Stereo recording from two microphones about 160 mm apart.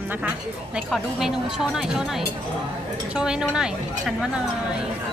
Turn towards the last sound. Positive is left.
turn(degrees=-5)  # may be behind; listen again after turning